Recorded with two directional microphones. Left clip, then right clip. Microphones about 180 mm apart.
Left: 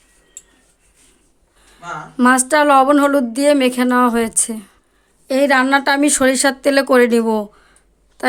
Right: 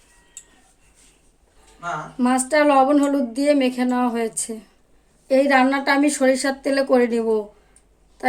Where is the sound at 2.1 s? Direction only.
55° left (ahead or behind).